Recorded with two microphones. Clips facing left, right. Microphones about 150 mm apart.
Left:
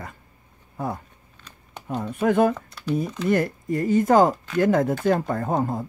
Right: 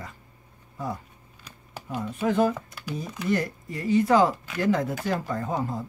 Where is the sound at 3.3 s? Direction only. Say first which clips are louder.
Left 4 dB; 50° left (ahead or behind).